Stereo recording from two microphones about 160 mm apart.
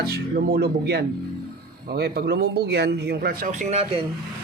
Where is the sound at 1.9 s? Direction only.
75° right (ahead or behind); by 4.0 s 40° right (ahead or behind).